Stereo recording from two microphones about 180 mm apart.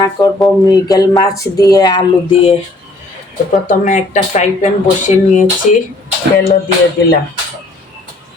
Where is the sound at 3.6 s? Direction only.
45° left (ahead or behind).